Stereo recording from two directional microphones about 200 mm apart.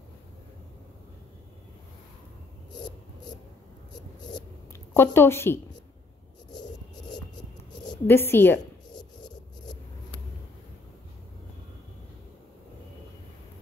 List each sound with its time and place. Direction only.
4.2 s a sound: 20° left (ahead or behind)
4.9 s a woman's voice: 10° left (ahead or behind)
7.8 s a woman's voice: 15° left (ahead or behind)
8.9 s scrape: 20° left (ahead or behind)